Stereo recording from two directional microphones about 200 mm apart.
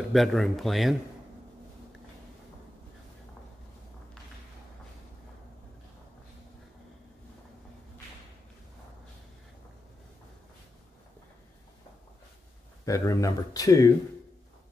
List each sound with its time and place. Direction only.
0.1 s speech: centre (ahead or behind)
12.8 s speech: 15° left (ahead or behind)